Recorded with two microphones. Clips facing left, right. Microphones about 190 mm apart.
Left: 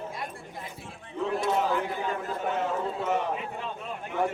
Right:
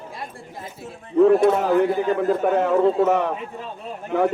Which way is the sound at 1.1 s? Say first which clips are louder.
Right 13 dB; 60° right (ahead or behind).